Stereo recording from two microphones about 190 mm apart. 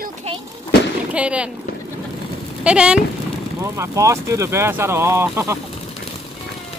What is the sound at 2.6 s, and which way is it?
Speech, 5° right (ahead or behind).